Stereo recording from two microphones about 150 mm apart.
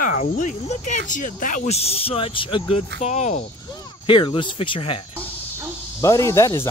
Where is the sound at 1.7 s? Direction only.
45° left (ahead or behind).